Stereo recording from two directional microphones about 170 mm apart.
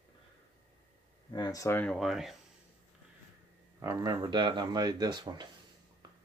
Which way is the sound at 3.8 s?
20° right (ahead or behind).